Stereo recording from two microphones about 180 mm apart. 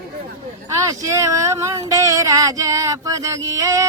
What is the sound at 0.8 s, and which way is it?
Speech, 20° right (ahead or behind).